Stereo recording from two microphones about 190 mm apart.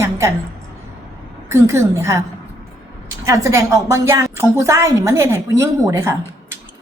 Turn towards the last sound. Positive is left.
turn(degrees=-15)  # may be behind; listen again after turning